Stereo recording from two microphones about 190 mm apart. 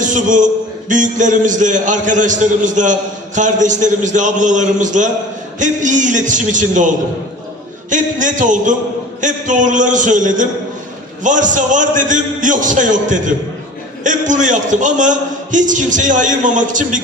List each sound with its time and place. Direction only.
0.0 s a man's voice: 40° right (ahead or behind)